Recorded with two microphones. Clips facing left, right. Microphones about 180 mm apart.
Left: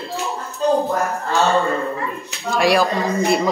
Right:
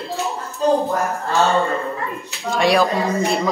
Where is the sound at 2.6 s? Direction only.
Centre (ahead or behind).